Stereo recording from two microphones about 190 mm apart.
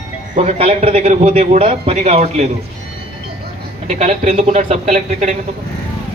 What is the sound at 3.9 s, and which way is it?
A man's voice, 35° right (ahead or behind).